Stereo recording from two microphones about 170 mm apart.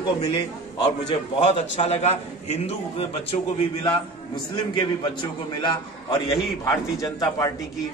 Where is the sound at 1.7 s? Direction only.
40° left (ahead or behind).